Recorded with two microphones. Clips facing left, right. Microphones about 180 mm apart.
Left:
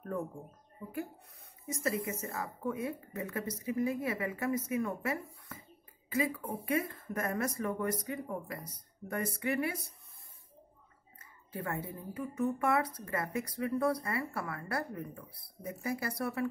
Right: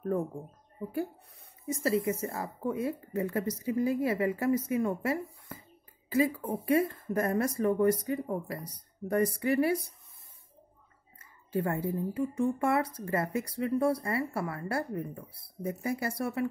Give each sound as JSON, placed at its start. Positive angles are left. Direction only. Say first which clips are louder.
{"t": 1.8, "sound": "a woman's voice", "louder": "right 6 dB", "side_deg": -30}
{"t": 11.1, "sound": "speech", "louder": "right 10 dB", "side_deg": -30}